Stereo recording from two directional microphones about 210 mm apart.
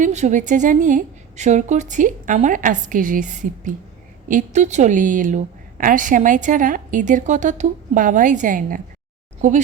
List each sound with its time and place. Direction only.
0.0 s a woman's voice: 35° right (ahead or behind)